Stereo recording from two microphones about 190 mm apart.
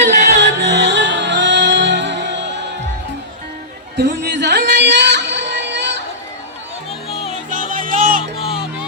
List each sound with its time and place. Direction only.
0.0 s music: 60° right (ahead or behind)
3.9 s a sound: 60° right (ahead or behind)
7.1 s music: 30° left (ahead or behind)
7.5 s music: 45° right (ahead or behind)
8.4 s music: 30° left (ahead or behind)